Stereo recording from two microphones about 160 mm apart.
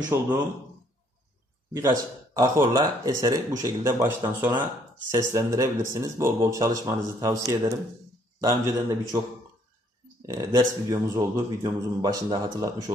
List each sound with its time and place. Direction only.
0.1 s a man's voice: 15° right (ahead or behind)
1.7 s speech: 20° right (ahead or behind)
10.2 s speech: 25° right (ahead or behind)